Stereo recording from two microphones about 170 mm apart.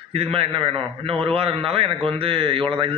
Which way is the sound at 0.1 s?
35° right (ahead or behind).